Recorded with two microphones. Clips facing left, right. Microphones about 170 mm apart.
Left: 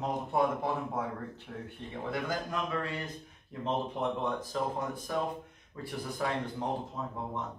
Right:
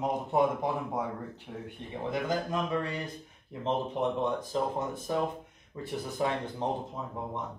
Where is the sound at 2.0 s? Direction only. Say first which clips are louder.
Right 4 dB; 20° right (ahead or behind).